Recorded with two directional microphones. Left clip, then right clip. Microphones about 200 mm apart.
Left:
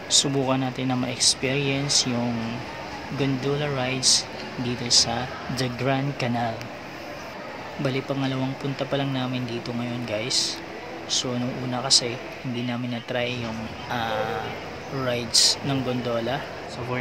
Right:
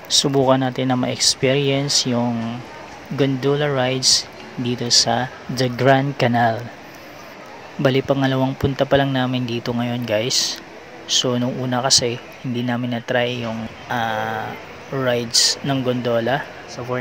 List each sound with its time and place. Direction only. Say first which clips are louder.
0.1 s speech: right 6 dB; 30° right (ahead or behind)
3.2 s speech: right 7 dB; 30° right (ahead or behind)
7.8 s speech: right 10 dB; 40° right (ahead or behind)